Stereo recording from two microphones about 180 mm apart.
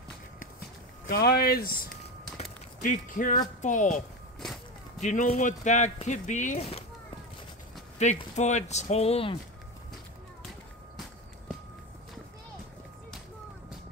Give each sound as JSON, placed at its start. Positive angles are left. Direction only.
{"t": 1.0, "sound": "speech", "side_deg": 60}
{"t": 2.3, "sound": "a sound", "side_deg": 45}
{"t": 3.6, "sound": "a woman's voice", "side_deg": 40}
{"t": 5.0, "sound": "a woman's voice", "side_deg": 45}
{"t": 8.0, "sound": "speech", "side_deg": 40}